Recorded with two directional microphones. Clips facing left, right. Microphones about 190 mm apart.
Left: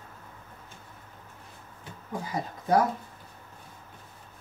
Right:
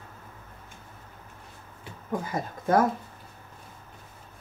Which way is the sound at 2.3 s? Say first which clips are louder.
Even; 50° right (ahead or behind).